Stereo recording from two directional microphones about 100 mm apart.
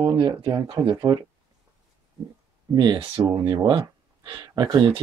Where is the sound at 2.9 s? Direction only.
65° right (ahead or behind).